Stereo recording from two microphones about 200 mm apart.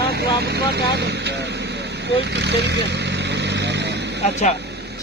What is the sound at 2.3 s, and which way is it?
Vehicle, 60° right (ahead or behind).